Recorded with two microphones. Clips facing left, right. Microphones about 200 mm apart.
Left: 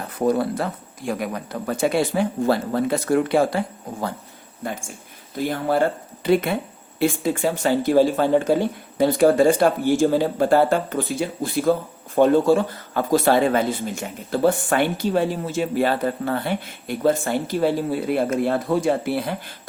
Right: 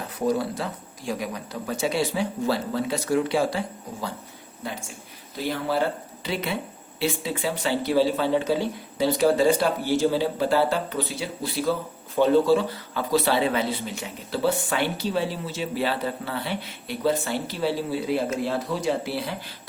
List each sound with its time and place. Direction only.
0.1 s speech: 55° left (ahead or behind)
5.4 s speech: 50° left (ahead or behind)